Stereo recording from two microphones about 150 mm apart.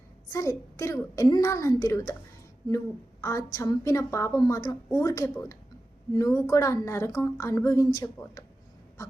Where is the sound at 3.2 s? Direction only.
20° left (ahead or behind).